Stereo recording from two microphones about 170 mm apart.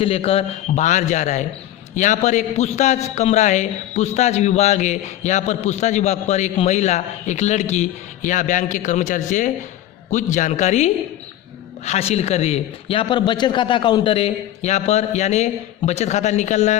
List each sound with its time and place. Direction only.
0.0 s a man's voice: 35° left (ahead or behind)